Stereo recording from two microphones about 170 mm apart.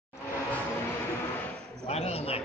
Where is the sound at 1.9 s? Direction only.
35° left (ahead or behind).